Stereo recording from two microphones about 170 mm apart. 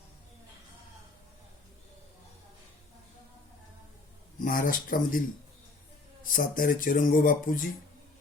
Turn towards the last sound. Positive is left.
turn(degrees=55)  # may be behind; listen again after turning